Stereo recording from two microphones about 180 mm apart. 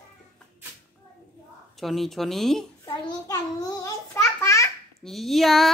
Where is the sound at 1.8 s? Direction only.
Centre (ahead or behind).